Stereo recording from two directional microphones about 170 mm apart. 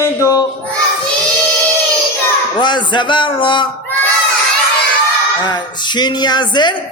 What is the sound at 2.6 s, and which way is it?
Music, 25° left (ahead or behind).